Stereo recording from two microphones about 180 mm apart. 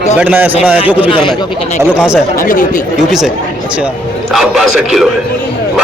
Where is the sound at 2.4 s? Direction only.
50° left (ahead or behind).